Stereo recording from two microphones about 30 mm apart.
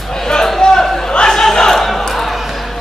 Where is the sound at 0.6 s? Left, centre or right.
Left.